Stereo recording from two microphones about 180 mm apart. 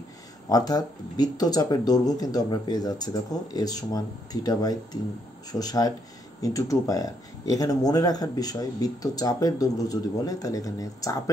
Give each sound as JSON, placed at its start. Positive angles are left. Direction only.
{"t": 0.5, "sound": "speech", "side_deg": 20}